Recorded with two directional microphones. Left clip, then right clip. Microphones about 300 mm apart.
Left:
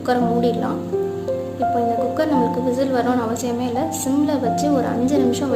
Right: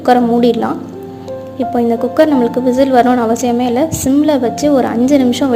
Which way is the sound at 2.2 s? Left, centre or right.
Right.